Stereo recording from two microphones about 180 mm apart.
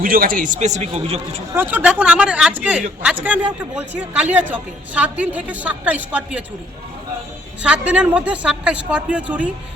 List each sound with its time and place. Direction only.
0.0 s a man's voice: 50° right (ahead or behind); by 1.4 s 35° right (ahead or behind)
1.5 s a woman's voice: 10° right (ahead or behind)
7.6 s a woman's voice: 5° right (ahead or behind)